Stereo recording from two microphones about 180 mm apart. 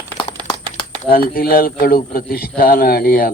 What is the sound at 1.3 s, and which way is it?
Speech, 55° left (ahead or behind).